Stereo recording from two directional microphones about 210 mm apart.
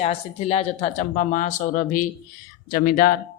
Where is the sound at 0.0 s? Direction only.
30° left (ahead or behind).